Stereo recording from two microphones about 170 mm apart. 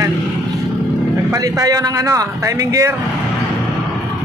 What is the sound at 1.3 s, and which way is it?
A man's voice, 20° right (ahead or behind).